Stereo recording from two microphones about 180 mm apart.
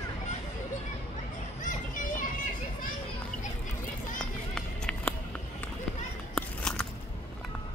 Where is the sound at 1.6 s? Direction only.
45° left (ahead or behind).